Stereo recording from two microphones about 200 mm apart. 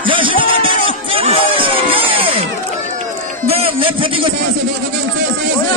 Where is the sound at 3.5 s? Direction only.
30° right (ahead or behind).